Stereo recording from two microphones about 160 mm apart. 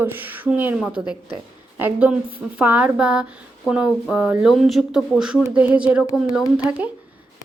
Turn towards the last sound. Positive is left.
turn(degrees=-10)  # may be behind; listen again after turning